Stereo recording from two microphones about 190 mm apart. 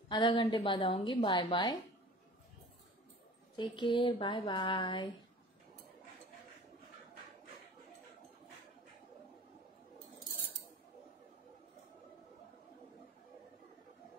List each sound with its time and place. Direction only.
0.1 s a woman's voice: 25° left (ahead or behind)
3.5 s a woman's voice: 25° left (ahead or behind)